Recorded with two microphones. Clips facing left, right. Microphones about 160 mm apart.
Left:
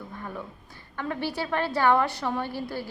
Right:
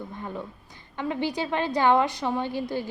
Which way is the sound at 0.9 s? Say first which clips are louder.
Right 2 dB; 15° right (ahead or behind).